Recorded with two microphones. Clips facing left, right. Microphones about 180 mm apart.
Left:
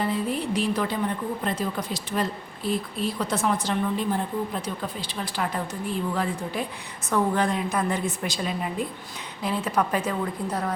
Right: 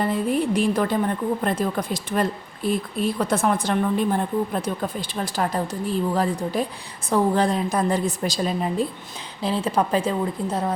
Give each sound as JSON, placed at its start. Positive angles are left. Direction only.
{"t": 0.0, "sound": "a woman's voice", "side_deg": -50}